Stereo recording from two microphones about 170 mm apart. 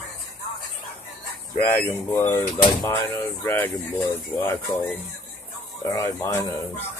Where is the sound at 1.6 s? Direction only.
15° left (ahead or behind).